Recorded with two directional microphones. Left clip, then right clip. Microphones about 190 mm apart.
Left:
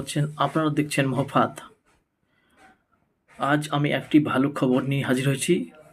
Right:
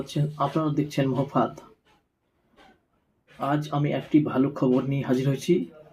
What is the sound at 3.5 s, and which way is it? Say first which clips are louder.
Speech: left 3 dB; centre (ahead or behind).